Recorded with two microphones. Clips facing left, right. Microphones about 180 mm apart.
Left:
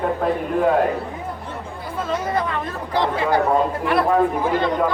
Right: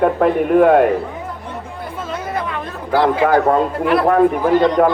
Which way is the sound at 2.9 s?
90° right.